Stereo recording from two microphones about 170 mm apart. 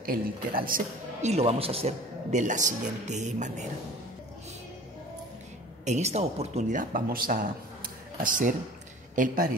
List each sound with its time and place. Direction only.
0.0 s a man's voice: 60° right (ahead or behind)
1.3 s a man's voice: 35° right (ahead or behind)
5.9 s a man's voice: 40° right (ahead or behind)